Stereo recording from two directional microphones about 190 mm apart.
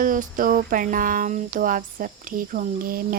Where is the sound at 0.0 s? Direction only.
45° right (ahead or behind).